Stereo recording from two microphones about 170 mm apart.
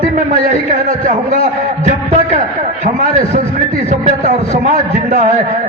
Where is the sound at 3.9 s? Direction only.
40° right (ahead or behind).